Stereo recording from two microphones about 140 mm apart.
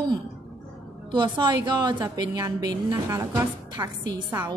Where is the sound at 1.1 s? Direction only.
35° right (ahead or behind).